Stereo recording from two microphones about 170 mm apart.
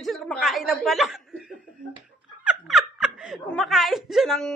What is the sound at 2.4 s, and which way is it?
Laughter, centre (ahead or behind).